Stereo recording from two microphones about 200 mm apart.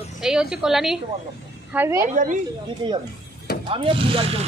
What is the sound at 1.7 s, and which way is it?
Speech, 15° right (ahead or behind).